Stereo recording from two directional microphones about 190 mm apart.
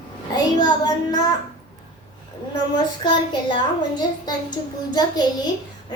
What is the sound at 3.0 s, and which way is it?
Child singing, 25° left (ahead or behind).